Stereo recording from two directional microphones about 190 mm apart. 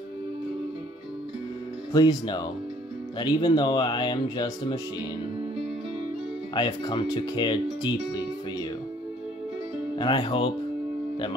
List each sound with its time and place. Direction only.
1.9 s speech: 20° left (ahead or behind)
6.5 s speech: 25° left (ahead or behind)
9.9 s speech: 25° left (ahead or behind)